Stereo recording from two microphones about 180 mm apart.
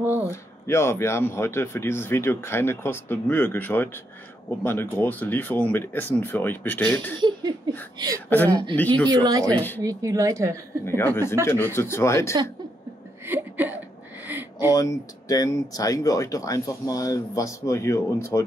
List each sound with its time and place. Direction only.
0.0 s speech: 10° right (ahead or behind)
0.3 s speech: 15° left (ahead or behind)
7.2 s a sound: 25° right (ahead or behind)
8.3 s speech: 10° left (ahead or behind)
9.2 s a sound: 20° right (ahead or behind)
9.5 s speech: 10° left (ahead or behind)
9.8 s speech: 15° right (ahead or behind)
10.9 s speech: 15° left (ahead or behind)
13.2 s a sound: 10° right (ahead or behind)
14.7 s speech: 20° left (ahead or behind)